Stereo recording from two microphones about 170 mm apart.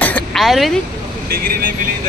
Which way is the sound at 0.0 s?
5° left (ahead or behind).